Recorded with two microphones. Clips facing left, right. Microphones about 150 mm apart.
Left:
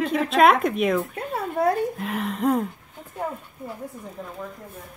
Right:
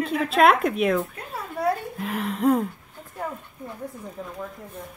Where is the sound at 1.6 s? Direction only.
50° left (ahead or behind).